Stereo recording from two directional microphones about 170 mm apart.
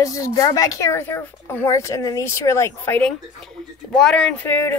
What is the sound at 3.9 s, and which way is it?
Speech, 5° left (ahead or behind).